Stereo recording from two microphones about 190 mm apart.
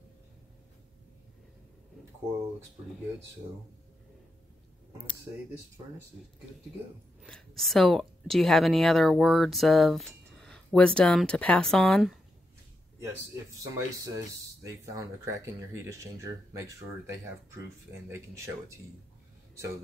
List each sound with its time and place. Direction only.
7.2 s speech: 5° left (ahead or behind)
13.0 s speech: 15° right (ahead or behind)
18.1 s speech: 15° right (ahead or behind)